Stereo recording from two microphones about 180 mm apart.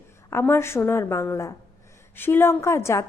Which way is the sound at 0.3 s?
15° left (ahead or behind).